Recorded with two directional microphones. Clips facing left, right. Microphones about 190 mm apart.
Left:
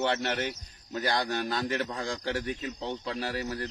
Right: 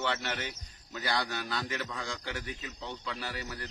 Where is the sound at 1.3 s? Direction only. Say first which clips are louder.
Left 6 dB; 40° left (ahead or behind).